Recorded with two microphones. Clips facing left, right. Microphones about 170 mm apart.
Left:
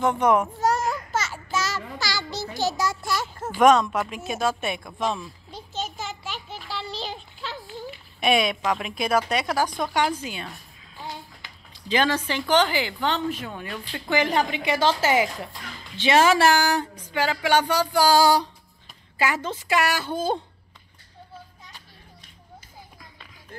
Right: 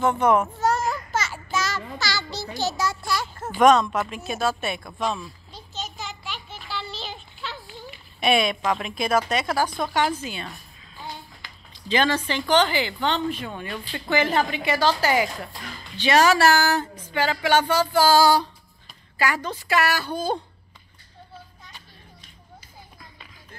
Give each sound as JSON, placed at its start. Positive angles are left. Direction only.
{"t": 0.0, "sound": "speech", "side_deg": 10}
{"t": 0.8, "sound": "a sound", "side_deg": 0}
{"t": 2.0, "sound": "a child's voice", "side_deg": 10}
{"t": 3.4, "sound": "speech", "side_deg": 10}
{"t": 5.7, "sound": "a sound", "side_deg": 50}
{"t": 8.2, "sound": "speech", "side_deg": 10}
{"t": 11.7, "sound": "a woman's voice", "side_deg": 10}